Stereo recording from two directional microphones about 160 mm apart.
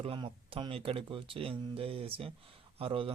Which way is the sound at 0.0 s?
35° right (ahead or behind).